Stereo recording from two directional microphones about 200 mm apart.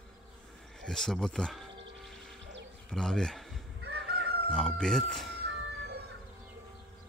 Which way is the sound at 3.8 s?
55° right (ahead or behind).